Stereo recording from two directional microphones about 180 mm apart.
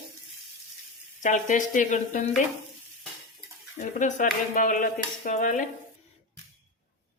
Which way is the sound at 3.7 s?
45° left (ahead or behind).